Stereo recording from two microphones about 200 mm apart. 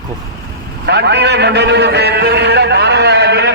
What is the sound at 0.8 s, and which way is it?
A man's voice, 55° right (ahead or behind).